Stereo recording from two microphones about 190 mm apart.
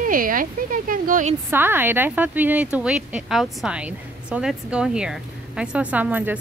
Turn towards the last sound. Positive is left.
turn(degrees=-10)  # may be behind; listen again after turning